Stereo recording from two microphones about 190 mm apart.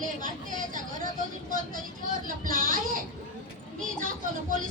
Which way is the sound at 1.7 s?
45° right (ahead or behind).